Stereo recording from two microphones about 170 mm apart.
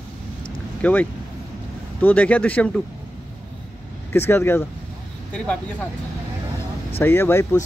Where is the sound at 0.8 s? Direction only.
10° left (ahead or behind).